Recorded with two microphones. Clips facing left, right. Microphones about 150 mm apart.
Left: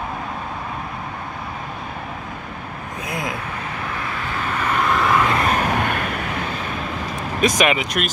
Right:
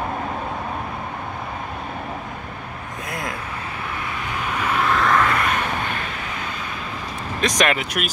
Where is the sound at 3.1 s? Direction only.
Centre (ahead or behind).